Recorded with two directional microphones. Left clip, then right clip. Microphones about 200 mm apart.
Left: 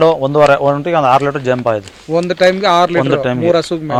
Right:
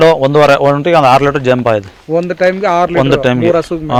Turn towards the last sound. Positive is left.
turn(degrees=-5)  # may be behind; listen again after turning